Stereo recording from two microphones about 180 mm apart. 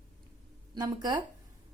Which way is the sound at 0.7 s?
25° right (ahead or behind).